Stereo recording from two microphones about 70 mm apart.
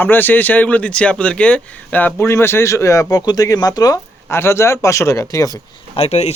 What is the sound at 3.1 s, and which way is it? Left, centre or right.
Speech, left.